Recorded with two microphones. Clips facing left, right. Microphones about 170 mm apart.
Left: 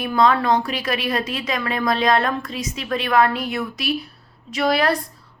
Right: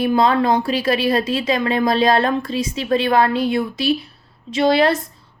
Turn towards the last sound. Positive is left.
turn(degrees=-25)  # may be behind; listen again after turning